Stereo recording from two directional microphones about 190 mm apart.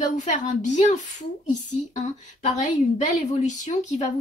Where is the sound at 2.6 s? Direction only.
40° left (ahead or behind).